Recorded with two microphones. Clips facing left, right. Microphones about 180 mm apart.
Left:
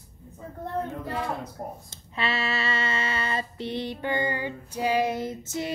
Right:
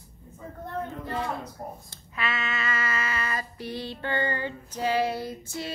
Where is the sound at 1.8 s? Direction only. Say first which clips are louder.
Left 3 dB; 30° left (ahead or behind).